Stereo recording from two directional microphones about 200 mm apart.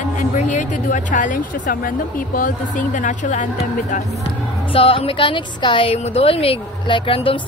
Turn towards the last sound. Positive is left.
turn(degrees=25)  # may be behind; listen again after turning